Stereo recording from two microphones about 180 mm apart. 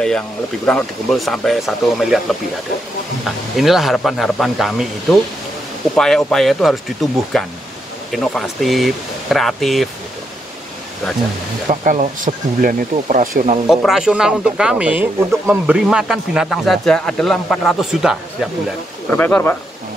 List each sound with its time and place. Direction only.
0.7 s speech: 5° left (ahead or behind)
3.5 s speech: centre (ahead or behind)
11.8 s speech: 40° right (ahead or behind)
13.7 s speech: 5° right (ahead or behind)
19.1 s speech: 10° left (ahead or behind)